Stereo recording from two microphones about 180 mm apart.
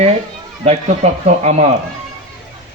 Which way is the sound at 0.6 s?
35° right (ahead or behind).